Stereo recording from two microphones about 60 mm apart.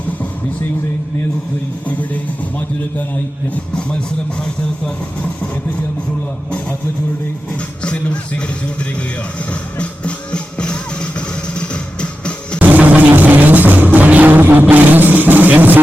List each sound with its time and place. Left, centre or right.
3.5 s speech: centre
7.8 s speech: centre
9.5 s music: left
12.5 s music: right